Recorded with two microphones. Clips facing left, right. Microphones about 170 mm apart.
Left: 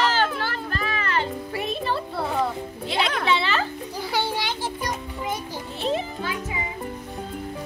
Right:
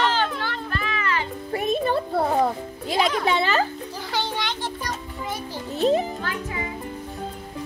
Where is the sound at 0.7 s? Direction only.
40° left (ahead or behind).